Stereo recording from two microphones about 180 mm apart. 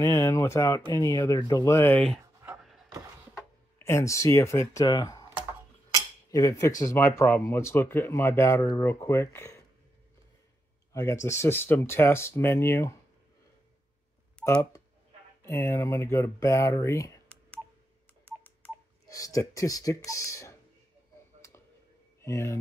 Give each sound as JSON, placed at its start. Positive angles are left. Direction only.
{"t": 0.0, "sound": "speech", "side_deg": 15}
{"t": 3.3, "sound": "speech", "side_deg": 15}
{"t": 6.3, "sound": "speech", "side_deg": 20}
{"t": 10.9, "sound": "speech", "side_deg": 15}
{"t": 14.4, "sound": "speech", "side_deg": 15}
{"t": 22.2, "sound": "speech", "side_deg": 15}